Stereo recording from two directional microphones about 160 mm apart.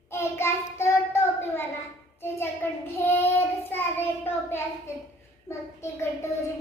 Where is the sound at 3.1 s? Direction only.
15° left (ahead or behind).